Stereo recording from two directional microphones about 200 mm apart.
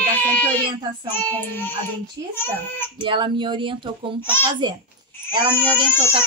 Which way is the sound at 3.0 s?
25° right (ahead or behind).